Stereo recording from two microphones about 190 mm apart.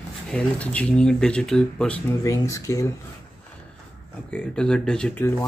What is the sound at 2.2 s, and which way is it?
Speech, 15° left (ahead or behind).